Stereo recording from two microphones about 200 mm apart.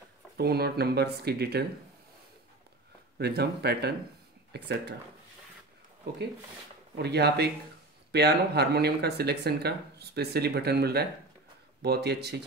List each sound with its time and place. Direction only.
0.4 s speech: 50° right (ahead or behind)
3.2 s speech: 55° right (ahead or behind)
7.0 s speech: 55° right (ahead or behind)